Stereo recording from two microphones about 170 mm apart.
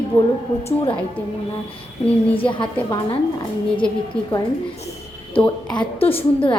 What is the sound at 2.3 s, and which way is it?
Speech, 30° left (ahead or behind).